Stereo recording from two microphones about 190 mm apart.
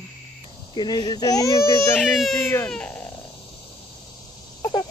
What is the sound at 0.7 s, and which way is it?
Speech, 20° left (ahead or behind).